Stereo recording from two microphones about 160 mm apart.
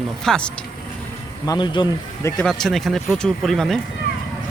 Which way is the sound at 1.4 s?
25° left (ahead or behind).